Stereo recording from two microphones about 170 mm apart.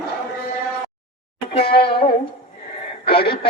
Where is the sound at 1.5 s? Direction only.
35° left (ahead or behind).